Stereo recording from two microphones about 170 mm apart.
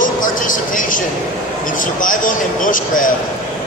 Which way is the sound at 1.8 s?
50° left (ahead or behind).